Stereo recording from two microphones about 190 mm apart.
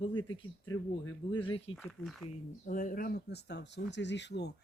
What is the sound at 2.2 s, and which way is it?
Speech, 45° left (ahead or behind).